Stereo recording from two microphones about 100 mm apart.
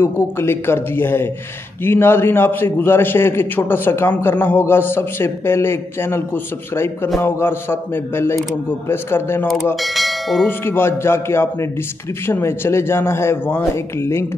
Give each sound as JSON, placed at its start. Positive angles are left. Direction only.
{"t": 0.0, "sound": "a man's voice", "side_deg": 25}
{"t": 9.8, "sound": "bell", "side_deg": 0}
{"t": 10.4, "sound": "a man's voice", "side_deg": 20}